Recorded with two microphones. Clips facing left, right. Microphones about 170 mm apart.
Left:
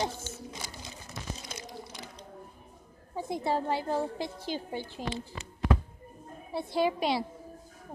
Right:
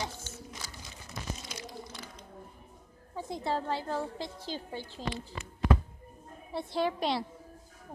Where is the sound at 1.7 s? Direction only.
20° left (ahead or behind).